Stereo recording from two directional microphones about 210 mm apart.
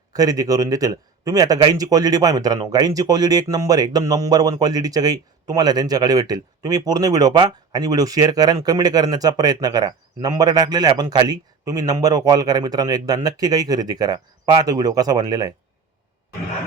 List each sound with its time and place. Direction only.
0.1 s speech: 15° right (ahead or behind)